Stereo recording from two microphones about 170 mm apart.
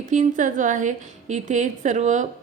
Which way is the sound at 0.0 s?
45° right (ahead or behind).